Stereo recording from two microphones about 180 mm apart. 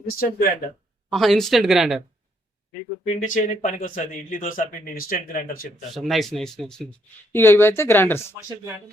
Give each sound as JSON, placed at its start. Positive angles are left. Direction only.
{"t": 0.0, "sound": "speech", "side_deg": 55}
{"t": 1.1, "sound": "speech", "side_deg": 0}
{"t": 3.0, "sound": "speech", "side_deg": 45}
{"t": 5.9, "sound": "speech", "side_deg": 0}